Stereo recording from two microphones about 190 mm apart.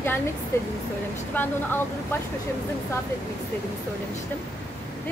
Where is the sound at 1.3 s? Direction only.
10° left (ahead or behind).